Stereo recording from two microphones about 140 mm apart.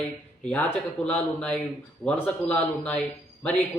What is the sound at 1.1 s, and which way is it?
Speech, 10° left (ahead or behind).